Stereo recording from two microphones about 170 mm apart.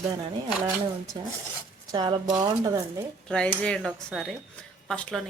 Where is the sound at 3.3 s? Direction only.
5° left (ahead or behind).